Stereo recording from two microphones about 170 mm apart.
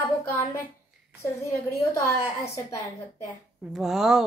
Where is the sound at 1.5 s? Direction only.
15° left (ahead or behind).